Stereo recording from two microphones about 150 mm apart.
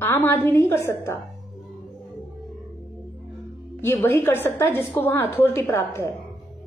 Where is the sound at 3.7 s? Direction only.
15° left (ahead or behind).